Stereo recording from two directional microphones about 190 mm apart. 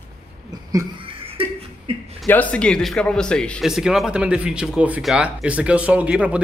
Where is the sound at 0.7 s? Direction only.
20° right (ahead or behind).